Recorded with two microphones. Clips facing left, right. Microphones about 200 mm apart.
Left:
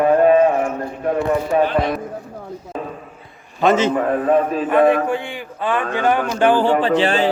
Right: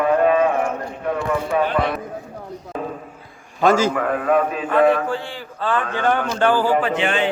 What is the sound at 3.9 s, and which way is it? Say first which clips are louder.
Speech: left 3 dB; 25° left (ahead or behind).